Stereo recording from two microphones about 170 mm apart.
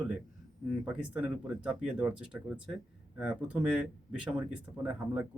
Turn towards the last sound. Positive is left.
turn(degrees=-5)  # may be behind; listen again after turning